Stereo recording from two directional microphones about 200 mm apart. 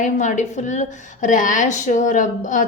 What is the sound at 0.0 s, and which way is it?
A woman's voice, 40° left (ahead or behind).